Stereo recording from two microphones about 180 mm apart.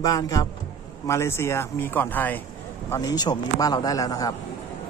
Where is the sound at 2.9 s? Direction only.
20° left (ahead or behind).